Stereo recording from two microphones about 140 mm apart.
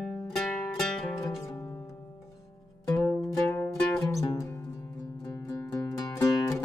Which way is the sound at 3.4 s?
15° left (ahead or behind).